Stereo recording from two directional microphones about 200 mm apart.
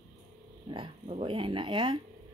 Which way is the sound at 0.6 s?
25° right (ahead or behind).